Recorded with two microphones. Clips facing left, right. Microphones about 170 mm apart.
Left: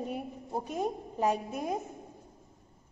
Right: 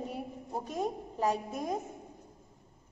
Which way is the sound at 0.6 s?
5° left (ahead or behind).